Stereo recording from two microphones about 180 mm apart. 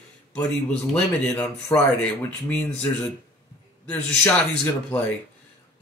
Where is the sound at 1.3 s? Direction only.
10° left (ahead or behind).